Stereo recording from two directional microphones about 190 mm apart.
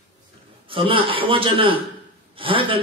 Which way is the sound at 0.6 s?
25° right (ahead or behind).